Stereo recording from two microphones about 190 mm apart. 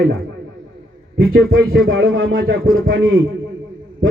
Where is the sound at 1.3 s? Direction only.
90° right.